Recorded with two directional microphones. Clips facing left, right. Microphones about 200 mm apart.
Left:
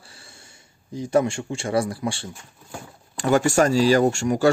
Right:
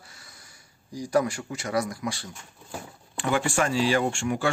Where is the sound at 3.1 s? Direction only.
40° left (ahead or behind).